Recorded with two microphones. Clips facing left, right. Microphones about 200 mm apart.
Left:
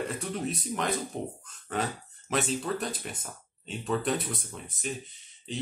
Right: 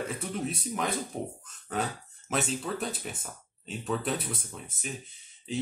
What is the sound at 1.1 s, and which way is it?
Speech, 5° right (ahead or behind).